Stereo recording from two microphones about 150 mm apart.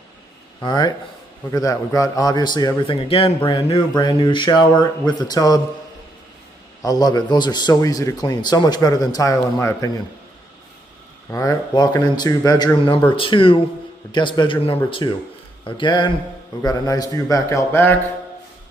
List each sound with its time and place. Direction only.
0.6 s a man's voice: 25° left (ahead or behind)
6.8 s a man's voice: 25° left (ahead or behind)
11.2 s a man's voice: 20° left (ahead or behind)